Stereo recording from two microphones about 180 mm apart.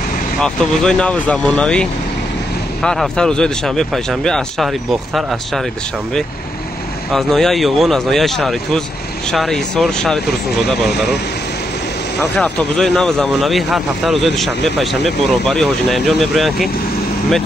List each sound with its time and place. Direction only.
0.4 s speech: 5° left (ahead or behind)
7.1 s speech: centre (ahead or behind)
12.2 s speech: 5° left (ahead or behind)